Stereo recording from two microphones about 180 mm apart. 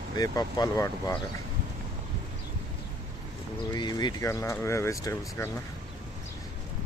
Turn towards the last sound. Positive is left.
turn(degrees=15)  # may be behind; listen again after turning